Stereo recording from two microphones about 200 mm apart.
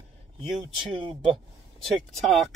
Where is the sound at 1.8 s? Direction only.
Centre (ahead or behind).